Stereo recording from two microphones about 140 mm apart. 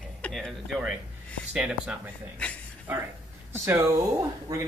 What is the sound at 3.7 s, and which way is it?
Speech, 20° right (ahead or behind).